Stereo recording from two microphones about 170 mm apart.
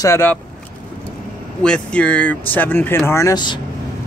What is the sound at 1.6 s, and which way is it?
Speech, 5° left (ahead or behind).